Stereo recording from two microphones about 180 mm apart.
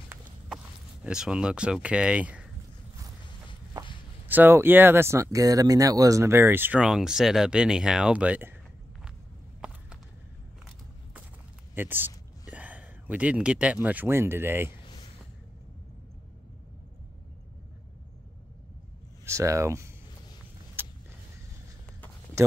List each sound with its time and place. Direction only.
1.0 s speech: 5° right (ahead or behind)
4.3 s speech: 10° right (ahead or behind)
11.7 s speech: 10° right (ahead or behind)
19.2 s speech: 15° right (ahead or behind)
20.8 s vehicle: 10° right (ahead or behind)